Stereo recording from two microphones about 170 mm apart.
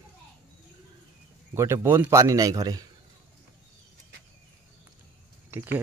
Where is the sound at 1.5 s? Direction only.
15° right (ahead or behind).